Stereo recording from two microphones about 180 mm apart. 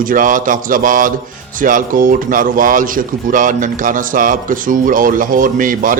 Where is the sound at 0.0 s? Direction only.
50° right (ahead or behind).